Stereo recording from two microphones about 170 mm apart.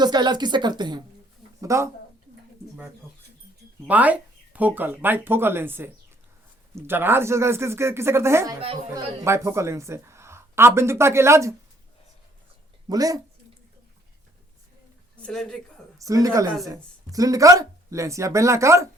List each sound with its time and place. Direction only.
0.0 s a woman's voice: 25° right (ahead or behind)
3.8 s a woman's voice: 10° right (ahead or behind)
12.9 s speech: 20° right (ahead or behind)
15.1 s a woman's voice: 5° left (ahead or behind)
16.0 s a woman's voice: 20° right (ahead or behind)